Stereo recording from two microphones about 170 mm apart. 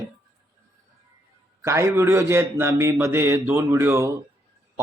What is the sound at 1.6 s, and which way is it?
A man's voice, 15° right (ahead or behind).